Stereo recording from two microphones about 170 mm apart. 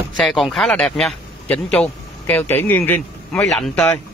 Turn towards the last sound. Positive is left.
turn(degrees=5)  # may be behind; listen again after turning